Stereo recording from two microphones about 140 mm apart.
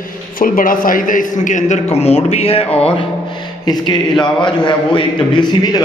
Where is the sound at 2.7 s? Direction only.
10° left (ahead or behind).